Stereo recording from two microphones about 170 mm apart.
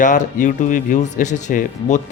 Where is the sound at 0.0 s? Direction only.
50° left (ahead or behind).